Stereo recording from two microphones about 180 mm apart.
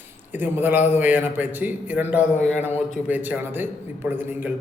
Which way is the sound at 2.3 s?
40° left (ahead or behind).